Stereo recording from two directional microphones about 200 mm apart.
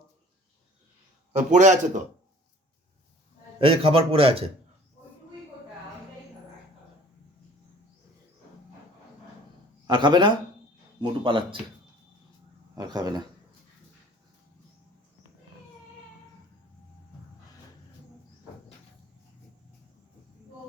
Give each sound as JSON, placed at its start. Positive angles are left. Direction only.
{"t": 1.3, "sound": "a man's voice", "side_deg": -35}
{"t": 3.6, "sound": "a man's voice", "side_deg": -30}
{"t": 9.8, "sound": "a man's voice", "side_deg": -20}
{"t": 12.7, "sound": "a man's voice", "side_deg": -20}